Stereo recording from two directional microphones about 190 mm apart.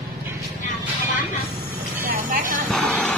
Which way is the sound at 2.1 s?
45° right (ahead or behind).